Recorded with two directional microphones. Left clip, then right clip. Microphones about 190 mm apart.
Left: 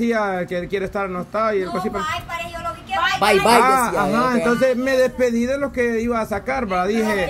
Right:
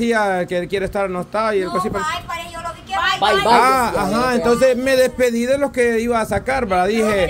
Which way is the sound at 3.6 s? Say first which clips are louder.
Right 1 dB; 10° right (ahead or behind).